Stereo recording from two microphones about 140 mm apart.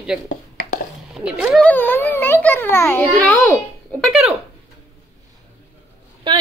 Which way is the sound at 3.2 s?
5° left (ahead or behind).